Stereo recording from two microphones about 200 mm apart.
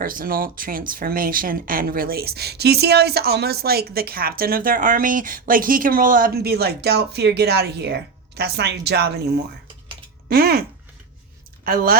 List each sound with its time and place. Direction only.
0.0 s speech: 45° right (ahead or behind)